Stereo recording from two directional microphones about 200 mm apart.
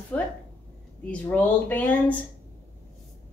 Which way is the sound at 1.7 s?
10° left (ahead or behind).